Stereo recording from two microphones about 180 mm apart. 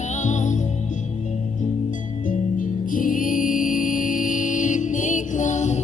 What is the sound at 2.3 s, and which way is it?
Music, 50° left (ahead or behind).